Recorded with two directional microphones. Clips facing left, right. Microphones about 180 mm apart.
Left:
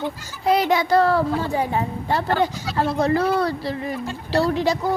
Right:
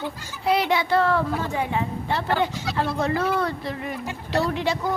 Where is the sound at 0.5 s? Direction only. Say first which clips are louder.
Left 3 dB; 40° left (ahead or behind).